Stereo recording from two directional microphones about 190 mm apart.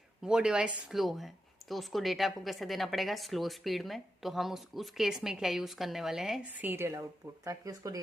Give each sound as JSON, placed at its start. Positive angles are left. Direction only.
{"t": 0.3, "sound": "speech", "side_deg": -5}